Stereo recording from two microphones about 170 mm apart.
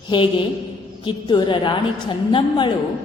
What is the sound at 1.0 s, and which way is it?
A woman's voice, 30° left (ahead or behind).